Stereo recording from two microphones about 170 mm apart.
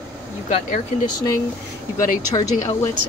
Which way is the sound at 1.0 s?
25° left (ahead or behind).